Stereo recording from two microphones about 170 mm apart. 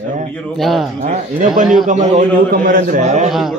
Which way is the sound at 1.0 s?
40° right (ahead or behind).